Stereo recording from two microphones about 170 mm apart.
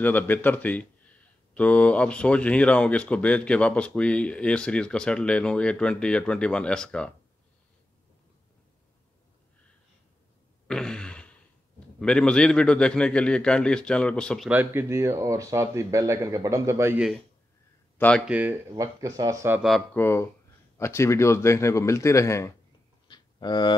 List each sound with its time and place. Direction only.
0.0 s speech: 10° left (ahead or behind)
10.7 s a sound: 5° left (ahead or behind)
12.0 s a man's voice: 5° left (ahead or behind)
14.5 s speech: 10° right (ahead or behind)
17.9 s speech: 10° left (ahead or behind)
18.2 s speech: 10° right (ahead or behind)
19.6 s a man's voice: centre (ahead or behind)
20.0 s speech: 15° left (ahead or behind)
23.0 s a sound: 25° left (ahead or behind)